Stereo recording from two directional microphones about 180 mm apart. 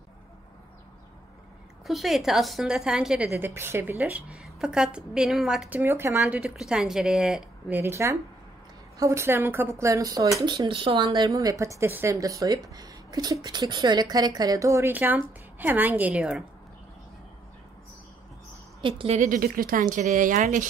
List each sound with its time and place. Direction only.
1.9 s a woman's voice: centre (ahead or behind)
18.8 s a woman's voice: 30° right (ahead or behind)
19.1 s speech: 50° right (ahead or behind)